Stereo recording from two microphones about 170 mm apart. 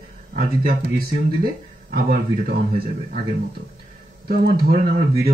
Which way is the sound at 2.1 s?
65° right (ahead or behind).